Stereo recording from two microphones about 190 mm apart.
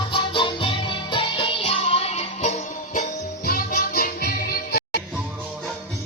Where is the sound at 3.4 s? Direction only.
50° left (ahead or behind).